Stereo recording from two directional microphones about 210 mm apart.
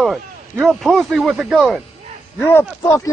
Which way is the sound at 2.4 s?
10° left (ahead or behind).